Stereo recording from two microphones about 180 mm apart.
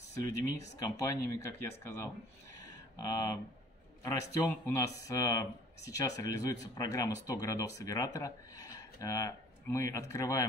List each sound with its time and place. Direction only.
0.1 s speech: 15° left (ahead or behind)
2.5 s a sound: 15° left (ahead or behind)
4.0 s a man's voice: 20° left (ahead or behind)